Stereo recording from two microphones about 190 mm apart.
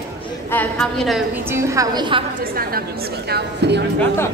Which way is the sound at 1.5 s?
15° right (ahead or behind).